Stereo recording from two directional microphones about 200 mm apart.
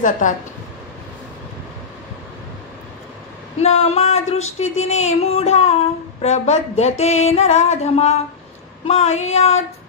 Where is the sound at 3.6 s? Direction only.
30° left (ahead or behind).